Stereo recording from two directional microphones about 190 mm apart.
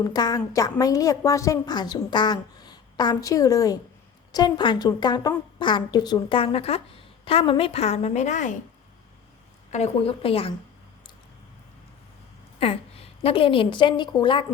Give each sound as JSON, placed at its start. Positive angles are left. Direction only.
{"t": 0.0, "sound": "a woman's voice", "side_deg": 20}
{"t": 9.7, "sound": "a woman's voice", "side_deg": 30}
{"t": 12.5, "sound": "a woman's voice", "side_deg": 30}